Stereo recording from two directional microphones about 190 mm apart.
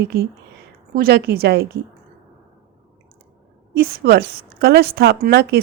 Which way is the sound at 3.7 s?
55° right (ahead or behind).